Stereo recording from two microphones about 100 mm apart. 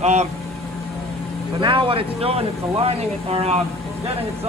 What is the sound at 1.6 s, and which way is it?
Speech, 60° right (ahead or behind).